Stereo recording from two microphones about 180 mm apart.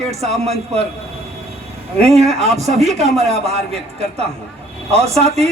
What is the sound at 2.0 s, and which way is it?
A man's voice, 35° right (ahead or behind).